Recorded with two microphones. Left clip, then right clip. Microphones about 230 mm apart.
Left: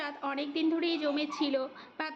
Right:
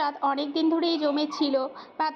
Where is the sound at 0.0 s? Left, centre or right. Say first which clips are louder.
Right 9 dB; centre.